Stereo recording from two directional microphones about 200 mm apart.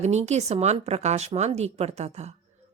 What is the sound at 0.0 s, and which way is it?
Speech, 35° right (ahead or behind).